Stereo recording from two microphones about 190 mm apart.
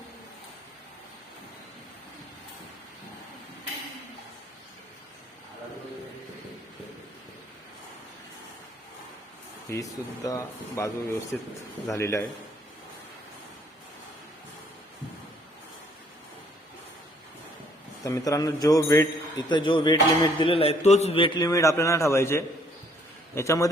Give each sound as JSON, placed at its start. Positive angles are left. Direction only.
{"t": 9.6, "sound": "speech", "side_deg": 15}
{"t": 18.0, "sound": "a man's voice", "side_deg": 15}